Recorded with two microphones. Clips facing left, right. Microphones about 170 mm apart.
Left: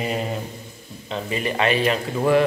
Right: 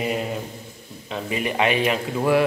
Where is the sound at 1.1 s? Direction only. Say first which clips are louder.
Left 1 dB; 10° right (ahead or behind).